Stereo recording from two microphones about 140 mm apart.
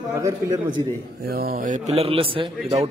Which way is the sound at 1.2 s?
90° right.